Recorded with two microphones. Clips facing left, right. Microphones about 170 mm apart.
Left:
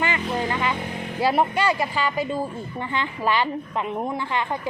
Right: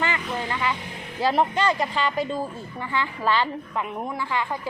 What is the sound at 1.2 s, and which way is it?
A woman's voice, 10° left (ahead or behind).